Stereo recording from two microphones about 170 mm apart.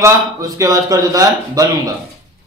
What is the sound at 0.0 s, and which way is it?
A man's voice, 20° right (ahead or behind).